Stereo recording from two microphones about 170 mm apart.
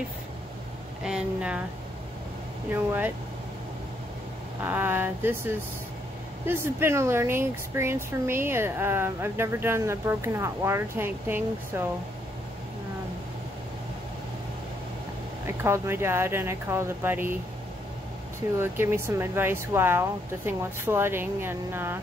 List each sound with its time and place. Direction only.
1.0 s speech: 5° right (ahead or behind)
2.7 s speech: 10° right (ahead or behind)
4.6 s speech: 10° right (ahead or behind)
6.4 s speech: 15° right (ahead or behind)
15.4 s speech: 15° right (ahead or behind)
18.6 s speech: 15° right (ahead or behind)